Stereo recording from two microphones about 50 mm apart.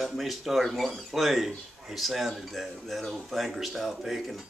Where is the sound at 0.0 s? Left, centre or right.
Centre.